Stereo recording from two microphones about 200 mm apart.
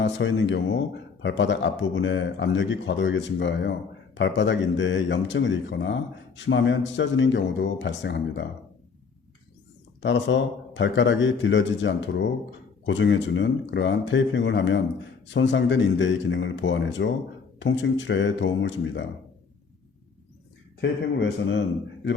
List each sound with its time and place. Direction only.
0.0 s a man's voice: 65° left (ahead or behind)
10.0 s a man's voice: 65° left (ahead or behind)
21.2 s a man's voice: 65° left (ahead or behind)